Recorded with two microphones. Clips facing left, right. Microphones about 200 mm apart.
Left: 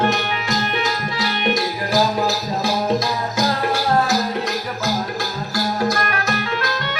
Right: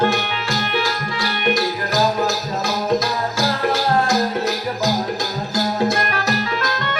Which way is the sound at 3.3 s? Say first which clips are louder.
Even; 10° left (ahead or behind).